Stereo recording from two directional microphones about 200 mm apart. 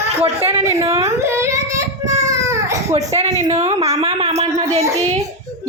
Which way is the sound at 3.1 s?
30° right (ahead or behind).